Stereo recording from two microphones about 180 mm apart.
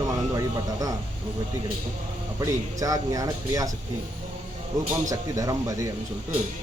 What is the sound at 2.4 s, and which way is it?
A man's voice, 20° right (ahead or behind).